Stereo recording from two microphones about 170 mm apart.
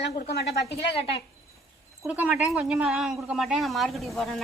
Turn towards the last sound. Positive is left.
turn(degrees=0)  # may be behind; listen again after turning